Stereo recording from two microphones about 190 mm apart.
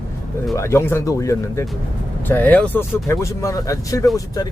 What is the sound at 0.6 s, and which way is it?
Speech, 15° left (ahead or behind).